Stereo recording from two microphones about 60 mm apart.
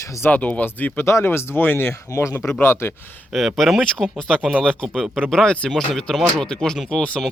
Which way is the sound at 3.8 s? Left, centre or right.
Centre.